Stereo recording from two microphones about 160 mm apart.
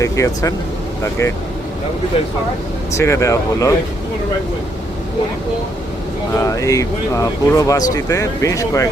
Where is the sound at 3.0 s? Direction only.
15° left (ahead or behind).